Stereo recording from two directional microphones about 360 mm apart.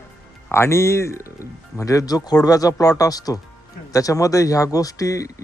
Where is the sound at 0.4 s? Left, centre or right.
Centre.